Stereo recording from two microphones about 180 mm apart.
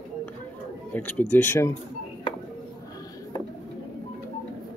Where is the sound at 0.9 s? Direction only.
10° left (ahead or behind).